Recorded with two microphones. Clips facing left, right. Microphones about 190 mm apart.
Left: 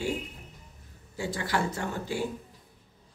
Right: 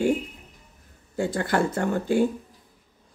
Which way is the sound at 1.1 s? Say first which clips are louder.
Right 6 dB; 55° right (ahead or behind).